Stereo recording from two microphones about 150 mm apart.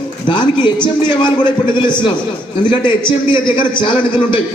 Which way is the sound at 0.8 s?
30° left (ahead or behind).